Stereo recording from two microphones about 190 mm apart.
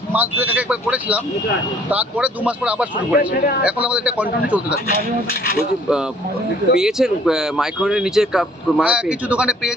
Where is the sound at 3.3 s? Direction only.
50° left (ahead or behind).